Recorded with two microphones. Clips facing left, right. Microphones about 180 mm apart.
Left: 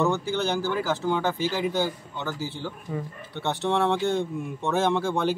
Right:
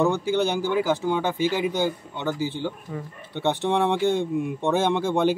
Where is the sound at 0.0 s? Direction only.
15° right (ahead or behind).